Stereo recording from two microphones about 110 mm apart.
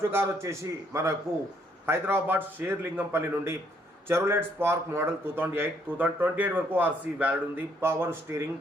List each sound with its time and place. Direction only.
0.0 s speech: 20° right (ahead or behind)